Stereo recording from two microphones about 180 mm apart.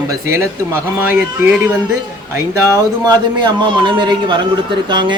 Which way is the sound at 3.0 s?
25° right (ahead or behind).